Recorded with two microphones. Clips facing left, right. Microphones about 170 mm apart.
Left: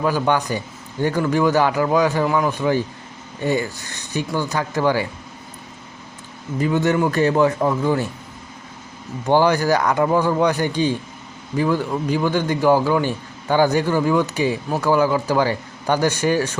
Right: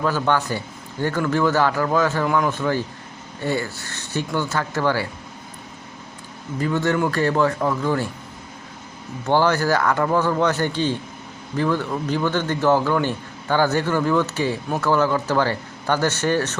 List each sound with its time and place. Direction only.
0.0 s a man's voice: 15° left (ahead or behind)
2.2 s speech: 5° left (ahead or behind)
2.5 s a man's voice: 15° left (ahead or behind)
6.6 s a man's voice: 15° left (ahead or behind)
9.2 s a man's voice: 15° left (ahead or behind)